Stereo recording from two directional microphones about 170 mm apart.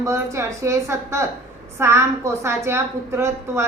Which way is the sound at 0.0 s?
20° right (ahead or behind).